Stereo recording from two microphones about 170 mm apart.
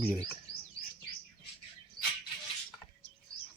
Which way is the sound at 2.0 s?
25° right (ahead or behind).